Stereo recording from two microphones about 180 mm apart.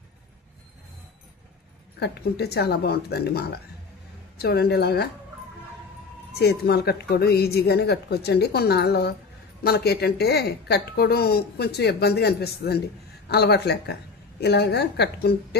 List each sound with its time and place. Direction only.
2.0 s a woman's voice: 65° left (ahead or behind)
6.4 s a woman's voice: 65° left (ahead or behind)